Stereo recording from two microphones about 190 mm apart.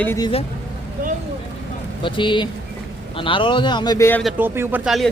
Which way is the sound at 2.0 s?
25° left (ahead or behind).